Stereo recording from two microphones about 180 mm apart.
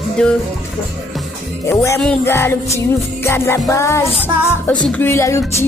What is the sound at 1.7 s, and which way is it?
Music, 15° left (ahead or behind).